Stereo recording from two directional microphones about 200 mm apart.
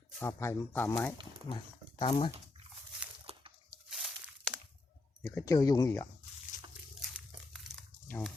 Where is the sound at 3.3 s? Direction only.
30° right (ahead or behind).